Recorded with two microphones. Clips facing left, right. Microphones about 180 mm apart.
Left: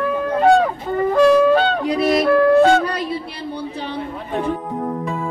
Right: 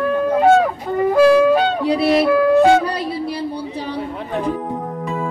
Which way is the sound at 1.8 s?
35° right (ahead or behind).